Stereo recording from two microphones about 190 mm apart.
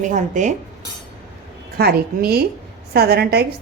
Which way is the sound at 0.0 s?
40° right (ahead or behind).